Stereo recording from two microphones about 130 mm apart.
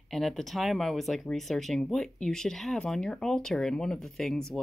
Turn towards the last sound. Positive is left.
turn(degrees=5)  # may be behind; listen again after turning